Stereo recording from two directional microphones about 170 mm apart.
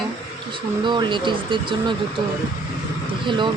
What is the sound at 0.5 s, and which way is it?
Speech, 25° right (ahead or behind).